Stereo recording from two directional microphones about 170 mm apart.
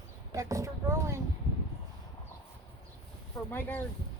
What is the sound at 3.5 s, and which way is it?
Speech, 10° left (ahead or behind).